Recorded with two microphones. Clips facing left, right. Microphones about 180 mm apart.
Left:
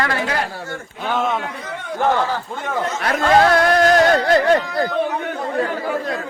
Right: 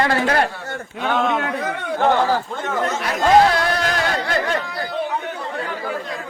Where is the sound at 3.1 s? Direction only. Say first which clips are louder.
Even; 50° left (ahead or behind).